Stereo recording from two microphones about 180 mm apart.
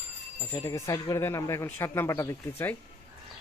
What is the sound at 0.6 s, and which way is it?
Speech, 15° left (ahead or behind).